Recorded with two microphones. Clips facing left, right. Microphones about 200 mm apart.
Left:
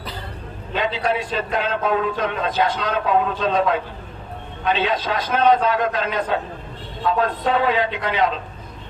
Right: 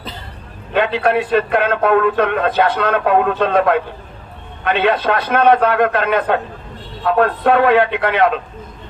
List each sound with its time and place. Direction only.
0.7 s a man's voice: 60° right (ahead or behind)